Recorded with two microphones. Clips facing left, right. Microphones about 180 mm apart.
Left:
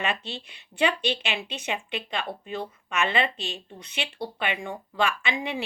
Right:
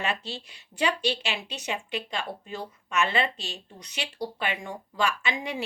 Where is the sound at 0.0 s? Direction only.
35° right (ahead or behind).